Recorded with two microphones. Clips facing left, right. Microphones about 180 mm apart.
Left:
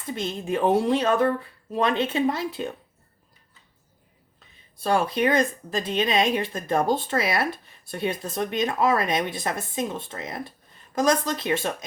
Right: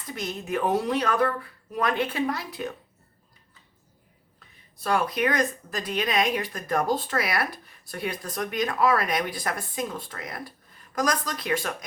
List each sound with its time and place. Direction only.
0.1 s speech: 25° left (ahead or behind)
4.4 s speech: 30° left (ahead or behind)